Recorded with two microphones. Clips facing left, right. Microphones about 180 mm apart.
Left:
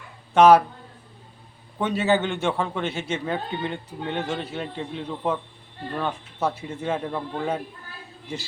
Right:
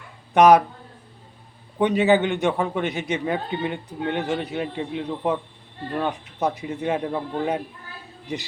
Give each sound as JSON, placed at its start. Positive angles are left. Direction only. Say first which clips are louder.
{"t": 0.3, "sound": "a man's voice", "louder": "even", "side_deg": -15}
{"t": 1.8, "sound": "a man's voice", "louder": "right 4 dB", "side_deg": -15}